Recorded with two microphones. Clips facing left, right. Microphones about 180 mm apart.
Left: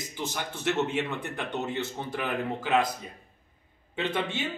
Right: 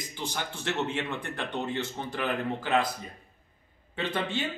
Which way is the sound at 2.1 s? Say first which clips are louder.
Right 1 dB; 10° left (ahead or behind).